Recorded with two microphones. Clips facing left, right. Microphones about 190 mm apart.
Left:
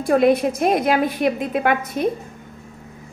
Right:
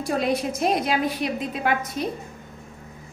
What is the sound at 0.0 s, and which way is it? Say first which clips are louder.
A woman's voice: left 8 dB; 55° left (ahead or behind).